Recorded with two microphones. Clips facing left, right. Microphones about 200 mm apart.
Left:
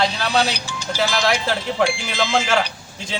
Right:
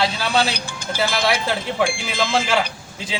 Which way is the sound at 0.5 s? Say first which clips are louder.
Even; 55° right (ahead or behind).